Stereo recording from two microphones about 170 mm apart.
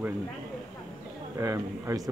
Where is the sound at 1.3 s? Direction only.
15° right (ahead or behind).